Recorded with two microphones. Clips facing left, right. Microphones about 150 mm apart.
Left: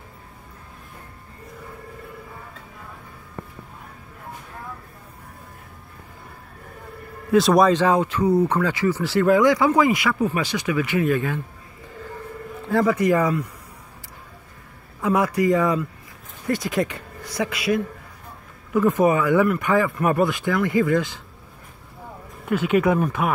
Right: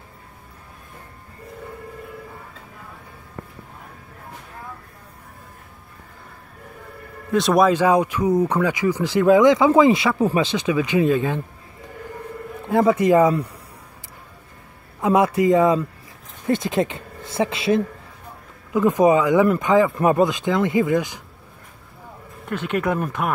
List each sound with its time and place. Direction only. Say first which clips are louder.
7.3 s speech: left 1 dB; centre (ahead or behind); by 11.4 s 25° right (ahead or behind)
12.6 s speech: right 2 dB; 20° right (ahead or behind)
15.0 s speech: right 3 dB; 20° right (ahead or behind)
22.5 s speech: left 4 dB; 5° left (ahead or behind)